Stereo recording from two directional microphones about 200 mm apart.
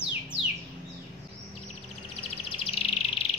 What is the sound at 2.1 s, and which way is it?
Bird, 30° left (ahead or behind).